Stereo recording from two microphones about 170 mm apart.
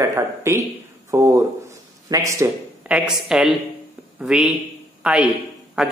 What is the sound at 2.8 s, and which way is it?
A woman's voice, 5° right (ahead or behind).